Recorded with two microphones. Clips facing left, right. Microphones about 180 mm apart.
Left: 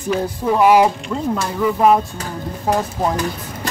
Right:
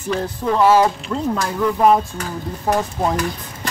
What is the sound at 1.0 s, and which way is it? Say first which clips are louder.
Speech: even; 5° left (ahead or behind).